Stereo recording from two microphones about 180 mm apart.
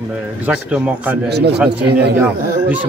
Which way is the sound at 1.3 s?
65° right (ahead or behind).